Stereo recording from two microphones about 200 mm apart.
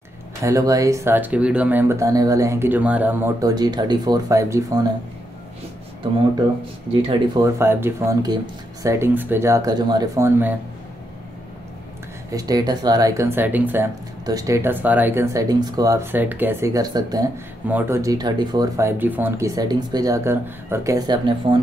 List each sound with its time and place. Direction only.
0.4 s speech: 15° right (ahead or behind)
6.9 s speech: 25° right (ahead or behind)
12.3 s speech: 20° right (ahead or behind)